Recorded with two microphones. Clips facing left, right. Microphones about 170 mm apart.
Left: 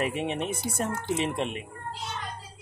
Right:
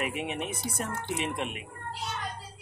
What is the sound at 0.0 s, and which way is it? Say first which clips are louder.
Speech: left 4 dB; 30° left (ahead or behind).